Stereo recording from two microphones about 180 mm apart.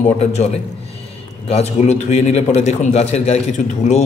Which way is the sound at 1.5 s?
35° left (ahead or behind).